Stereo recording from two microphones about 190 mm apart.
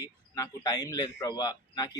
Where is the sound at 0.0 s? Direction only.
20° left (ahead or behind).